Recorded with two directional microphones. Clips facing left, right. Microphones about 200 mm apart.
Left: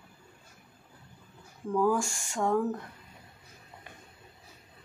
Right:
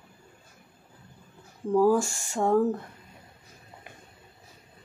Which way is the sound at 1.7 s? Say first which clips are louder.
Right 5 dB; 35° right (ahead or behind).